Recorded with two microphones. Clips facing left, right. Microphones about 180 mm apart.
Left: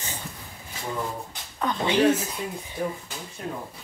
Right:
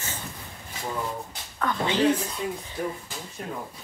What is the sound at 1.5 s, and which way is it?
Speech, 15° left (ahead or behind).